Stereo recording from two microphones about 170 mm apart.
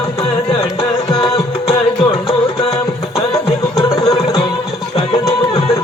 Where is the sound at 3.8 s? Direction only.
20° left (ahead or behind).